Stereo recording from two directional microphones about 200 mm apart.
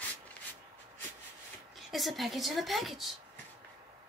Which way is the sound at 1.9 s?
Centre (ahead or behind).